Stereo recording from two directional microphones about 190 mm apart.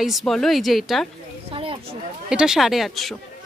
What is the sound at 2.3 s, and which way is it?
Speech, 5° right (ahead or behind).